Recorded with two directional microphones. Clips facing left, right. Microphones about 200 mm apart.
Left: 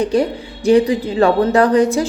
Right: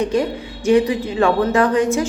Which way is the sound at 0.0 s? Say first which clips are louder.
Left 3 dB; 35° left (ahead or behind).